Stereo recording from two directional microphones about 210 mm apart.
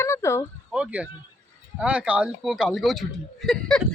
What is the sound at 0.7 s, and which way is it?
Speech, 5° right (ahead or behind).